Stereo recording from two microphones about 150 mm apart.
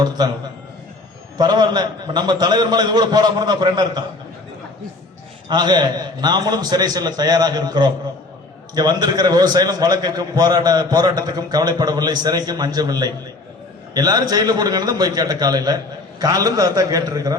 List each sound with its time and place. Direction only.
1.4 s a man's voice: 30° right (ahead or behind)
5.5 s a man's voice: 30° right (ahead or behind)